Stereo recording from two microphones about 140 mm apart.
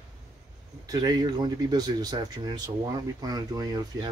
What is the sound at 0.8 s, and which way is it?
Speech, 25° right (ahead or behind).